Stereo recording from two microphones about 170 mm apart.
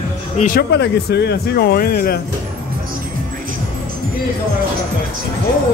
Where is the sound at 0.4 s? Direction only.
60° left (ahead or behind).